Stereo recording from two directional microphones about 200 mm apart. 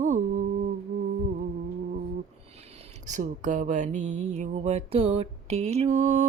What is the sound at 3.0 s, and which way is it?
Speech, 40° right (ahead or behind).